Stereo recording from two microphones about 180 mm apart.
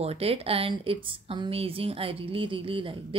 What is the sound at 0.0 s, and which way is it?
Speech, 35° right (ahead or behind).